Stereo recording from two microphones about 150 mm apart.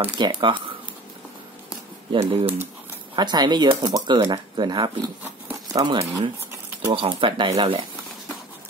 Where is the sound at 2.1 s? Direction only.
35° right (ahead or behind).